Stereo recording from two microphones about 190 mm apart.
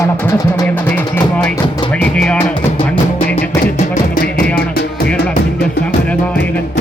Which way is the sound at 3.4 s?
50° left (ahead or behind).